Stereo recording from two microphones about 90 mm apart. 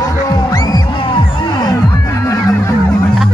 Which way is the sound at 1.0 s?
70° left (ahead or behind).